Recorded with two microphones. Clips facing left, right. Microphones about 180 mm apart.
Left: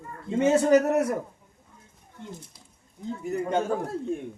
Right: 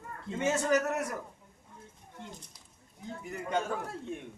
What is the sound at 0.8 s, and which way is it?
Speech, 30° left (ahead or behind).